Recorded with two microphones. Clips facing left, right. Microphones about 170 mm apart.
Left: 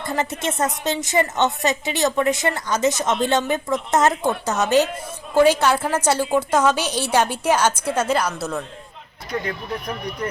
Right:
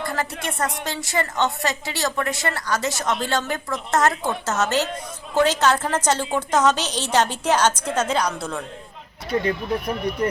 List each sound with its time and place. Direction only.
0.0 s a woman's voice: 20° left (ahead or behind)
9.5 s speech: 30° right (ahead or behind)